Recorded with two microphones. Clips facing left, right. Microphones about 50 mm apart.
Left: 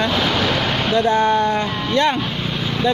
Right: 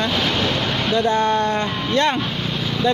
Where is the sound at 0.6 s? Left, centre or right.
Left.